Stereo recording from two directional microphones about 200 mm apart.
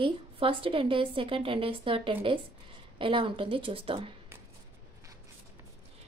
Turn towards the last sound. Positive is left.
turn(degrees=-25)  # may be behind; listen again after turning